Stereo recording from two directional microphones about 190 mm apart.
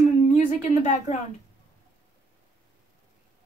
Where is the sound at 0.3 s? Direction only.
40° left (ahead or behind).